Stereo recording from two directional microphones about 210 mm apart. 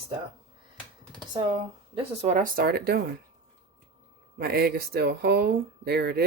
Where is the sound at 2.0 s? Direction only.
35° right (ahead or behind).